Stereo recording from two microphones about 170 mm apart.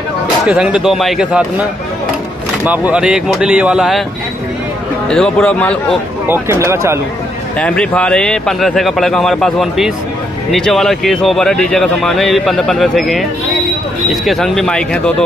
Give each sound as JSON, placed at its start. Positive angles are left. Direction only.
{"t": 0.5, "sound": "speech", "side_deg": -5}
{"t": 2.6, "sound": "speech", "side_deg": -10}
{"t": 5.1, "sound": "speech", "side_deg": 5}
{"t": 6.2, "sound": "speech", "side_deg": -15}
{"t": 7.5, "sound": "speech", "side_deg": 5}